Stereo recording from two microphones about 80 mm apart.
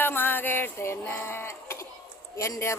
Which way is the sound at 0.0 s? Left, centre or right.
Left.